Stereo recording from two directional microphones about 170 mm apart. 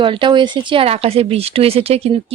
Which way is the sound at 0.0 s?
30° right (ahead or behind).